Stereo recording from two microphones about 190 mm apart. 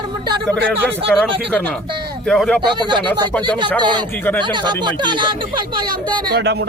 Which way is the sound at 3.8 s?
25° right (ahead or behind).